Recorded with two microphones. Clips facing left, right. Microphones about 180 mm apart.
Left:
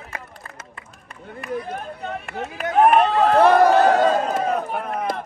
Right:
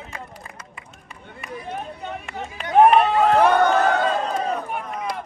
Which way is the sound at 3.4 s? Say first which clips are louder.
Left 6 dB; 35° left (ahead or behind).